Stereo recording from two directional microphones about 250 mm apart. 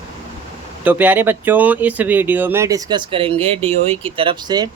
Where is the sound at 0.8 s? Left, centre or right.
Centre.